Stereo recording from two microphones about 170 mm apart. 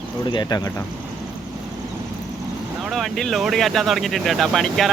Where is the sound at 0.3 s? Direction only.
25° left (ahead or behind).